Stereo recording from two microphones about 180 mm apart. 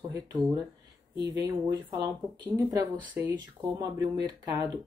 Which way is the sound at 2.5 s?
20° right (ahead or behind).